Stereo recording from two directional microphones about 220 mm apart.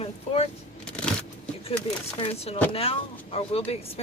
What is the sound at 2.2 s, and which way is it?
Speech, 25° left (ahead or behind).